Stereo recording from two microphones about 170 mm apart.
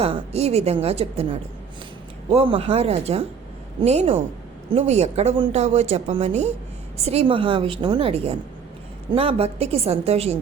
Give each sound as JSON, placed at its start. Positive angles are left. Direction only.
{"t": 0.0, "sound": "speech", "side_deg": -35}